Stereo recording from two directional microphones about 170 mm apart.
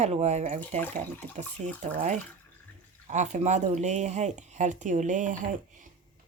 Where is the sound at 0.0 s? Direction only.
40° right (ahead or behind).